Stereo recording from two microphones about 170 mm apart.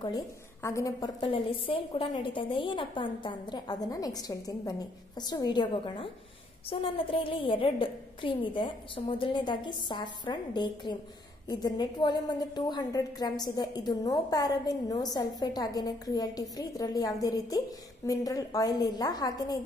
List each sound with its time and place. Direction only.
0.0 s a woman's voice: 20° left (ahead or behind)
1.2 s a woman's voice: 30° left (ahead or behind)